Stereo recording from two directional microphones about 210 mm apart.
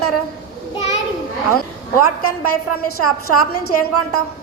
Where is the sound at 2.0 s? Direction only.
90° left.